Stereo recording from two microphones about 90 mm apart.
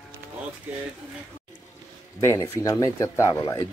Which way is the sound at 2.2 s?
35° left (ahead or behind).